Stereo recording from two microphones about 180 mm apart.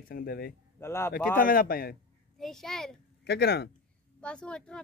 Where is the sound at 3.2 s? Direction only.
65° left (ahead or behind).